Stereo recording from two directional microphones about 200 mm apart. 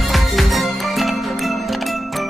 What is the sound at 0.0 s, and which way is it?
Music, centre (ahead or behind).